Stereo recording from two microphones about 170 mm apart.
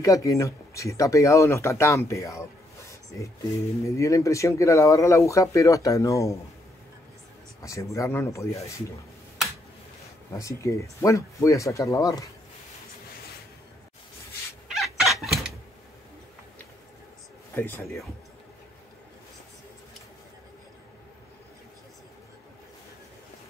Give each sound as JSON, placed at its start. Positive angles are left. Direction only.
{"t": 0.0, "sound": "speech", "side_deg": 20}
{"t": 3.9, "sound": "speech", "side_deg": 20}
{"t": 7.6, "sound": "speech", "side_deg": 20}
{"t": 10.3, "sound": "speech", "side_deg": 20}
{"t": 14.7, "sound": "chicken", "side_deg": 0}
{"t": 17.6, "sound": "speech", "side_deg": 15}